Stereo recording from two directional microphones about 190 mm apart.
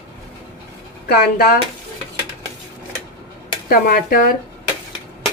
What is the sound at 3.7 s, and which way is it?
Speech, 50° left (ahead or behind).